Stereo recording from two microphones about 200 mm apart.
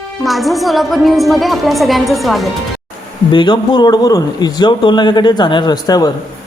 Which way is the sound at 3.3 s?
25° left (ahead or behind).